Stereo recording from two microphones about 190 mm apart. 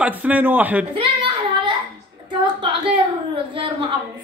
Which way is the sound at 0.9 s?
25° right (ahead or behind).